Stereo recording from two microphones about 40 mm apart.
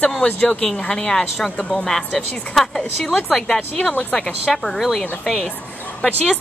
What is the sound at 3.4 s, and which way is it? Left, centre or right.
Speech, left.